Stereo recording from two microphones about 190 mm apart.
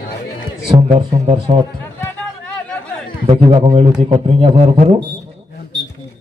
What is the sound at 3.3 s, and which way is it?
Speech, 30° right (ahead or behind).